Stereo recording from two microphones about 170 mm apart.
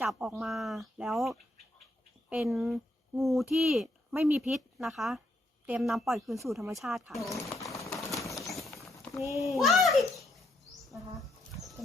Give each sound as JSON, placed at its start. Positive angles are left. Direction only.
{"t": 0.0, "sound": "speech", "side_deg": -5}
{"t": 4.1, "sound": "a child's voice", "side_deg": -15}
{"t": 4.4, "sound": "speech", "side_deg": 0}
{"t": 7.5, "sound": "typewriter", "side_deg": 20}
{"t": 7.9, "sound": "a sound", "side_deg": 0}
{"t": 8.2, "sound": "a sound", "side_deg": 20}
{"t": 9.2, "sound": "a child's voice", "side_deg": -20}
{"t": 9.6, "sound": "speech", "side_deg": 0}